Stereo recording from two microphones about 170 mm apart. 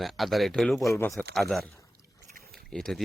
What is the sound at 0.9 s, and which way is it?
Speech, 15° left (ahead or behind).